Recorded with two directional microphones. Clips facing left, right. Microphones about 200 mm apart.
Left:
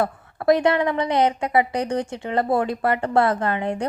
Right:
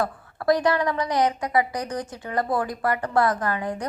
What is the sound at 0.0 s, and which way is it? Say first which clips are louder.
A woman's voice: left 3 dB; 25° left (ahead or behind).